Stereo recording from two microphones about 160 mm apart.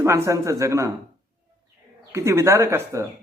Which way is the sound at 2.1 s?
15° right (ahead or behind).